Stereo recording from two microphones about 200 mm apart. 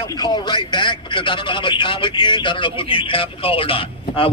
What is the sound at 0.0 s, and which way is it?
A man's voice, 20° left (ahead or behind).